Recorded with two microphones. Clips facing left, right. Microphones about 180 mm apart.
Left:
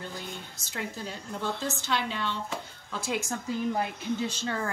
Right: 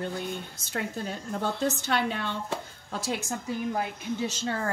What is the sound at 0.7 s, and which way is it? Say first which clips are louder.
A woman's voice: right 4 dB; 55° right (ahead or behind).